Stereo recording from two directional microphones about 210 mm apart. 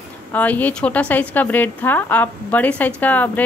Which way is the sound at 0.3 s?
5° left (ahead or behind).